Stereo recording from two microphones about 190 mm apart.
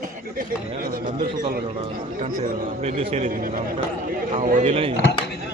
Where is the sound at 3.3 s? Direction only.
45° right (ahead or behind).